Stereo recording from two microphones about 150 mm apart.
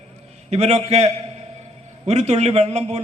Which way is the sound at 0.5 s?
45° right (ahead or behind).